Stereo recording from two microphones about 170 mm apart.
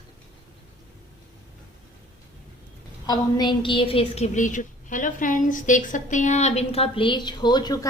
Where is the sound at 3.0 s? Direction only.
25° left (ahead or behind).